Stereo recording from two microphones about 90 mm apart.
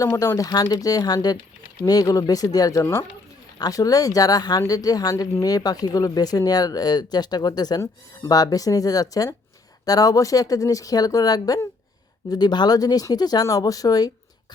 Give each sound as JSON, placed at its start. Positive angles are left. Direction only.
{"t": 0.2, "sound": "speech", "side_deg": 35}
{"t": 2.8, "sound": "speech", "side_deg": 25}
{"t": 3.6, "sound": "speech", "side_deg": 40}